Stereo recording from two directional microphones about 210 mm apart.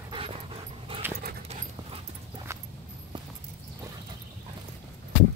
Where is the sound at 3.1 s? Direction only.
25° right (ahead or behind).